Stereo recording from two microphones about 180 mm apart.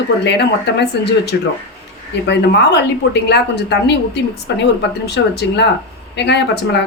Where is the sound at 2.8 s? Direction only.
70° left (ahead or behind).